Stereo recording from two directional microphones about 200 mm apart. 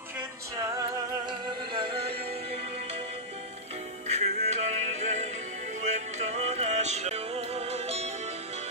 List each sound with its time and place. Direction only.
4.1 s music: 35° right (ahead or behind)